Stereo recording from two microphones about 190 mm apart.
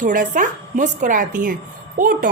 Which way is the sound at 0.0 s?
45° right (ahead or behind).